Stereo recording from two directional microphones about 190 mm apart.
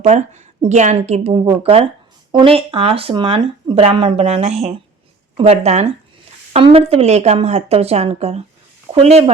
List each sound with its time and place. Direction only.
0.0 s speech: 35° right (ahead or behind)